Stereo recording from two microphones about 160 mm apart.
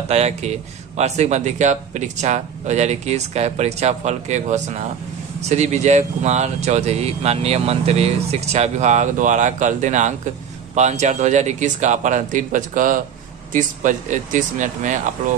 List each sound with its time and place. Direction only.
0.1 s speech: 45° right (ahead or behind)